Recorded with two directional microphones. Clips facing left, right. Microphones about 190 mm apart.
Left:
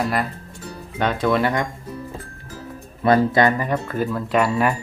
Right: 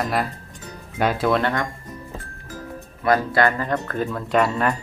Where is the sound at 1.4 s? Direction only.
10° left (ahead or behind).